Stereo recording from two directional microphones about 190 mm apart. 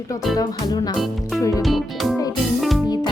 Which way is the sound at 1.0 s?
Centre (ahead or behind).